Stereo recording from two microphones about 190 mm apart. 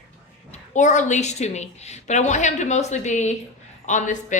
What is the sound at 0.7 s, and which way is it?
Speech, 40° left (ahead or behind).